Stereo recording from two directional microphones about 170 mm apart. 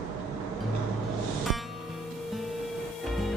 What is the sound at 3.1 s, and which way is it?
Music, centre (ahead or behind).